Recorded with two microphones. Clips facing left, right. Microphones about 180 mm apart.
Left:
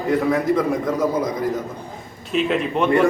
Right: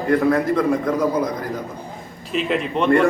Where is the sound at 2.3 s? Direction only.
Centre (ahead or behind).